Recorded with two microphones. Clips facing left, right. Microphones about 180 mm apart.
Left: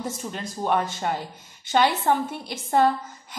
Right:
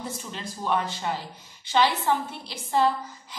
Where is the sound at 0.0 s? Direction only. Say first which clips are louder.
Left 4 dB; 45° left (ahead or behind).